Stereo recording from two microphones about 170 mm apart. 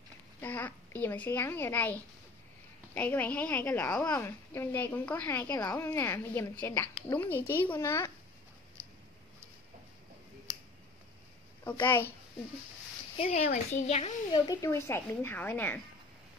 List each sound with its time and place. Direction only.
0.4 s a woman's voice: 10° left (ahead or behind)
11.8 s a woman's voice: 10° left (ahead or behind)
13.4 s speech: 45° left (ahead or behind)
14.3 s a woman's voice: 20° left (ahead or behind)